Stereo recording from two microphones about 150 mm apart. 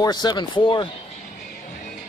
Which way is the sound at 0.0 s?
30° left (ahead or behind).